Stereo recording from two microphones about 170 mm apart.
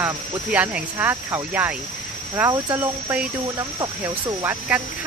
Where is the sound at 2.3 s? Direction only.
20° right (ahead or behind).